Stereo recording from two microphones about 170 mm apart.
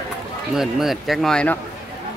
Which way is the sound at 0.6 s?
Centre (ahead or behind).